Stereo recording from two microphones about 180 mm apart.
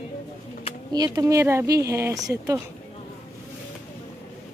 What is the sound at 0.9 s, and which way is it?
Speech, 20° right (ahead or behind).